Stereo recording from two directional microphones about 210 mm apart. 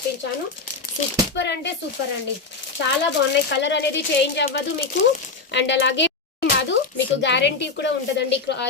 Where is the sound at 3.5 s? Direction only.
55° left (ahead or behind).